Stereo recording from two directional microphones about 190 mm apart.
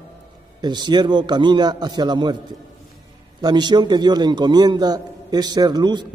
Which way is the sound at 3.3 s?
20° right (ahead or behind).